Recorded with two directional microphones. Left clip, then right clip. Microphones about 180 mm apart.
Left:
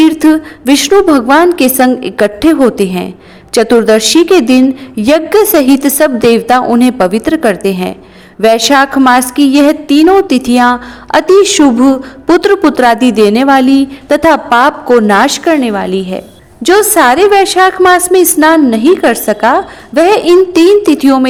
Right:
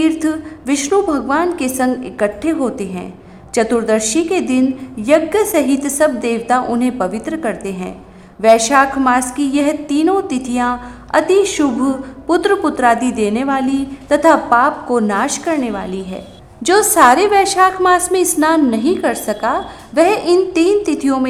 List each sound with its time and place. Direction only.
0.1 s a woman's voice: 30° left (ahead or behind)